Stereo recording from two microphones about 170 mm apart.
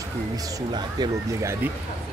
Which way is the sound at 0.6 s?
25° right (ahead or behind).